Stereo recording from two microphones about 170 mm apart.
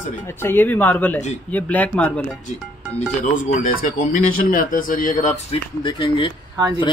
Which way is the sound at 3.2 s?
45° left (ahead or behind).